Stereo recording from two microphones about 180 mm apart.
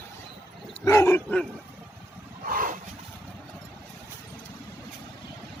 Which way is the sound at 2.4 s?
50° right (ahead or behind).